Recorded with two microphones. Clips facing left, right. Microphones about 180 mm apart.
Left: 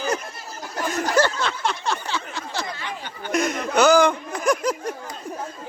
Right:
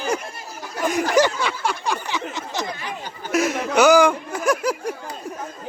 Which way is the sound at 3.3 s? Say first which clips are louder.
Right 2 dB; 5° right (ahead or behind).